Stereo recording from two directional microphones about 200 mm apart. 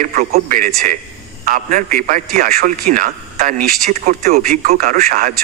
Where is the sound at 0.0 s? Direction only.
40° right (ahead or behind).